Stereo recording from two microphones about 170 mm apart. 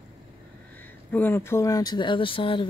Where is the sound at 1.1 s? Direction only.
10° left (ahead or behind); by 2.6 s 30° left (ahead or behind).